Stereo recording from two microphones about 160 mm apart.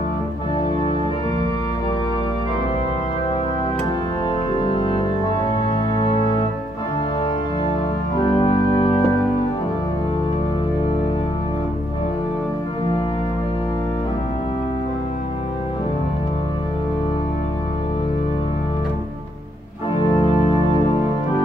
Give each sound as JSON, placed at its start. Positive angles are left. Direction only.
{"t": 4.6, "sound": "music", "side_deg": 35}
{"t": 8.4, "sound": "music", "side_deg": 35}